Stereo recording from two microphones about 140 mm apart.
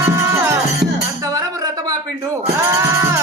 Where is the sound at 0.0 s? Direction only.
20° right (ahead or behind).